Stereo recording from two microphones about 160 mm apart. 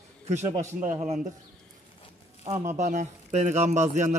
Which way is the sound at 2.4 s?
45° right (ahead or behind).